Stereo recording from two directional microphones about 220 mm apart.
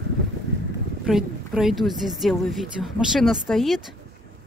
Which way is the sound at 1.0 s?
Centre (ahead or behind).